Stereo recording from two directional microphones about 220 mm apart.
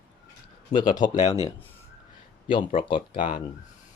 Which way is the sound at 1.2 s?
30° left (ahead or behind).